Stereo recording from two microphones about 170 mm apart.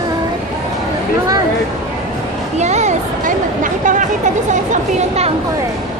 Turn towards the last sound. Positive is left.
turn(degrees=-45)  # may be behind; listen again after turning